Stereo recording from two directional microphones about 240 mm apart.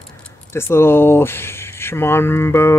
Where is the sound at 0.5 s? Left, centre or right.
Centre.